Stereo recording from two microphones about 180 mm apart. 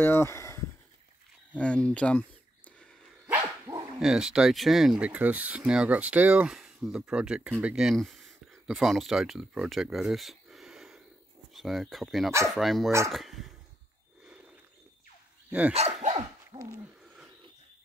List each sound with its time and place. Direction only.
0.0 s a sound: 15° left (ahead or behind)
1.6 s speech: 5° left (ahead or behind)
3.3 s dog: 15° right (ahead or behind)
4.0 s speech: 5° right (ahead or behind)
15.7 s speech: 35° right (ahead or behind)
16.5 s hoot: 20° right (ahead or behind)